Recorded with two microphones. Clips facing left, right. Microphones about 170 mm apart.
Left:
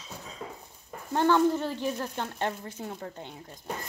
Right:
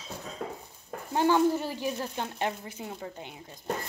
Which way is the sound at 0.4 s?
65° right (ahead or behind).